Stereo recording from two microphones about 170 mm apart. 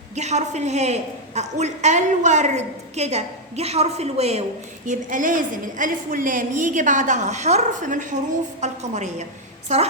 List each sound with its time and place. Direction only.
0.2 s a woman's voice: 40° right (ahead or behind)
4.9 s a woman's voice: 50° right (ahead or behind)